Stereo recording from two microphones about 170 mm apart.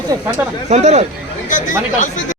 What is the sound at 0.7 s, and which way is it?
Speech, 40° right (ahead or behind).